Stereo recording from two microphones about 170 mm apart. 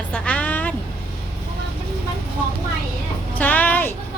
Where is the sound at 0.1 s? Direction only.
5° left (ahead or behind).